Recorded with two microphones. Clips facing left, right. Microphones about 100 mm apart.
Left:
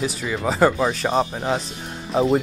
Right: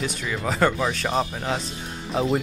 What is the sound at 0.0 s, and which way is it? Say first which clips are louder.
Speech: left 4 dB; 5° left (ahead or behind).